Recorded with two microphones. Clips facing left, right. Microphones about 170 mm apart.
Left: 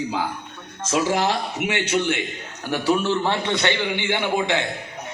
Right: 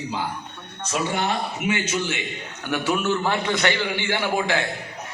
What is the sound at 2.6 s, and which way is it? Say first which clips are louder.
A man's voice: left 2 dB; 35° left (ahead or behind).